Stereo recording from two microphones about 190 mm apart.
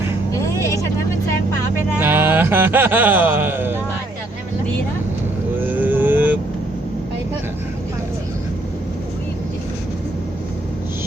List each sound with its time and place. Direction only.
0.3 s vehicle: 15° left (ahead or behind)
2.0 s a sound: 10° right (ahead or behind)
5.5 s vehicle: 10° right (ahead or behind)